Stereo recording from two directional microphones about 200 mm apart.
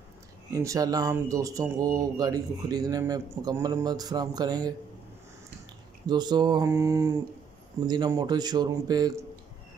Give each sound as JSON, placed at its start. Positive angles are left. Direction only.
{"t": 0.5, "sound": "speech", "side_deg": -15}
{"t": 6.0, "sound": "a man's voice", "side_deg": -20}